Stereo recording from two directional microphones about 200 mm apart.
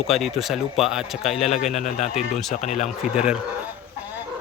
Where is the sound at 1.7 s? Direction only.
35° left (ahead or behind).